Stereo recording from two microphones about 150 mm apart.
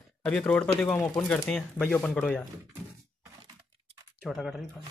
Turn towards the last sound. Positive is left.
turn(degrees=0)  # may be behind; listen again after turning